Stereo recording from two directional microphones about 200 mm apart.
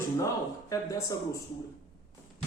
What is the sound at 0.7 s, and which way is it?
Speech, 15° left (ahead or behind).